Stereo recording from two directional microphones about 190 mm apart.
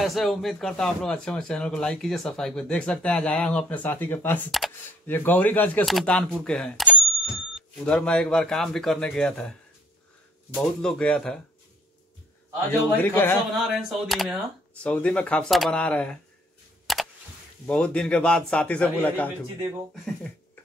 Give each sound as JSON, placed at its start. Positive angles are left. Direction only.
{"t": 0.0, "sound": "a man's voice", "side_deg": 0}
{"t": 12.9, "sound": "a man's voice", "side_deg": 10}
{"t": 13.7, "sound": "a man's voice", "side_deg": 0}
{"t": 16.8, "sound": "a sound", "side_deg": 0}
{"t": 17.6, "sound": "a man's voice", "side_deg": 5}